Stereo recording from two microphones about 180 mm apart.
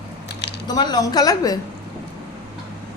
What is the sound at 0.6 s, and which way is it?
Speech, 20° left (ahead or behind).